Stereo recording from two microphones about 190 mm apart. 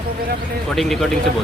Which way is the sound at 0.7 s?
Centre (ahead or behind).